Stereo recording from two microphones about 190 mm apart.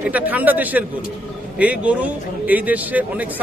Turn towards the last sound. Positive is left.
turn(degrees=-10)  # may be behind; listen again after turning